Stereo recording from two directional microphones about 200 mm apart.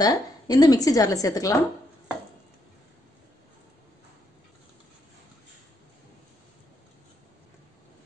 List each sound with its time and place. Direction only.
0.0 s a woman's voice: 20° left (ahead or behind)